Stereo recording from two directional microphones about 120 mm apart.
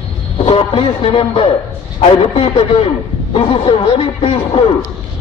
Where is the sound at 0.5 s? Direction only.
50° left (ahead or behind).